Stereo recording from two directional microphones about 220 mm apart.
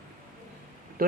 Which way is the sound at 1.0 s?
40° right (ahead or behind).